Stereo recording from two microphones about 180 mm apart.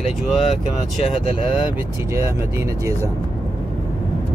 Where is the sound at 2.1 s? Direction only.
15° right (ahead or behind).